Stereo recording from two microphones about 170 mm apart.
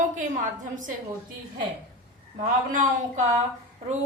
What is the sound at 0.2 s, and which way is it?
Speech, 50° right (ahead or behind).